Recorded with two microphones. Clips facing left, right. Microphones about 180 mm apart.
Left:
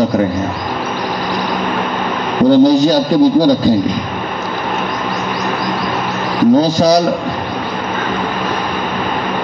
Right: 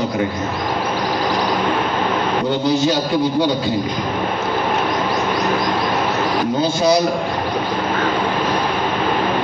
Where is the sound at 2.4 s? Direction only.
35° left (ahead or behind).